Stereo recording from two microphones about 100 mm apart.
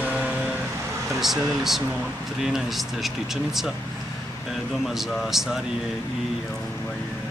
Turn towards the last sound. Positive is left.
turn(degrees=-5)  # may be behind; listen again after turning